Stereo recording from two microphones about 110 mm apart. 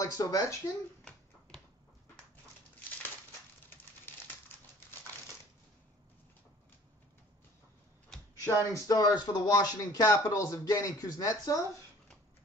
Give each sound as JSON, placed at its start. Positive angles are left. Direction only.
{"t": 0.0, "sound": "speech", "side_deg": 30}
{"t": 8.5, "sound": "speech", "side_deg": 30}